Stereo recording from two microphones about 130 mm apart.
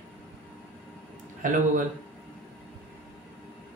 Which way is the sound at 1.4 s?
90° right.